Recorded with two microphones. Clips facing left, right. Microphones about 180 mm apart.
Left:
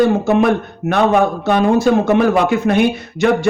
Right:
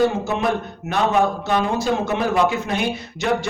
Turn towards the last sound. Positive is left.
turn(degrees=55)  # may be behind; listen again after turning